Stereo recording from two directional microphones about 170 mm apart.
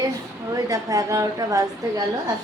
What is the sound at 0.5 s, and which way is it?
A woman's voice, 20° right (ahead or behind).